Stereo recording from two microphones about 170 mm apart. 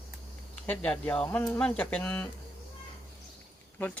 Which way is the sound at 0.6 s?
10° left (ahead or behind).